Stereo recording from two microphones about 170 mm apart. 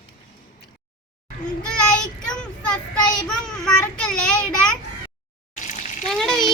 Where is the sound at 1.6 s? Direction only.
5° left (ahead or behind).